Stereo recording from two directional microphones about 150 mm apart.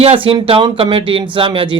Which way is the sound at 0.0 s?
40° right (ahead or behind).